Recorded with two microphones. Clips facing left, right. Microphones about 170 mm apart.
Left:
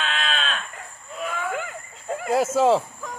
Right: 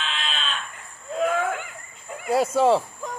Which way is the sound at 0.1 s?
45° left (ahead or behind).